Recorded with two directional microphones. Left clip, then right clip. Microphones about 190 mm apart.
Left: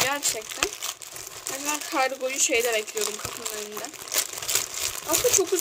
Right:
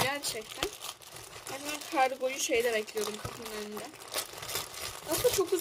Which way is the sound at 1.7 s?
5° left (ahead or behind).